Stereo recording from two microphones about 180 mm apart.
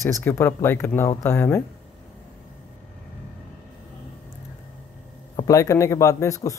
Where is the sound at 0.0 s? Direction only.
15° left (ahead or behind).